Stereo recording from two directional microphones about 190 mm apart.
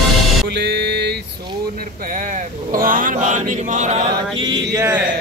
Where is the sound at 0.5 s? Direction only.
65° right (ahead or behind).